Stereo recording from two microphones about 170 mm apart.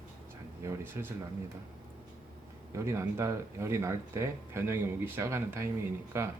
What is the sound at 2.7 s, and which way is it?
Speech, 15° right (ahead or behind).